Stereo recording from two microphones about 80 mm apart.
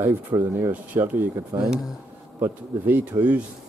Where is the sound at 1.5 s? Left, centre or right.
Right.